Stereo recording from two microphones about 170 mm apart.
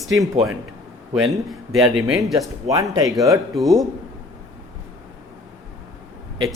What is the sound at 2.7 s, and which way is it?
Speech, 20° right (ahead or behind).